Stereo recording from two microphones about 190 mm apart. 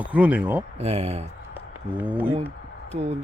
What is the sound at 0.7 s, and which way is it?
Speech, 35° right (ahead or behind).